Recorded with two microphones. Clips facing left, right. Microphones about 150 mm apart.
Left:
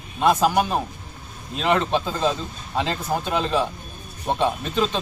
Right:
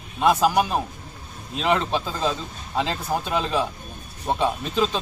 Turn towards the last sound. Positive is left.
turn(degrees=-5)  # may be behind; listen again after turning